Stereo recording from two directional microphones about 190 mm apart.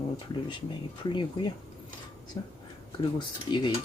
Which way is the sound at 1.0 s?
25° left (ahead or behind).